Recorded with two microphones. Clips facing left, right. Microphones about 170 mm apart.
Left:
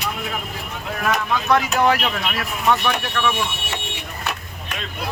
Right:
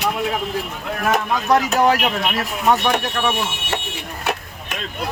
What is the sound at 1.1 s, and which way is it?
Speech, 40° right (ahead or behind).